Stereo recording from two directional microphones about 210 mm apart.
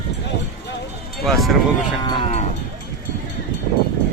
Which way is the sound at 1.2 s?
Centre (ahead or behind).